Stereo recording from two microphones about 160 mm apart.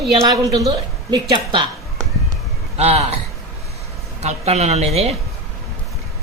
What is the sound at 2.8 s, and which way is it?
Speech, 40° right (ahead or behind).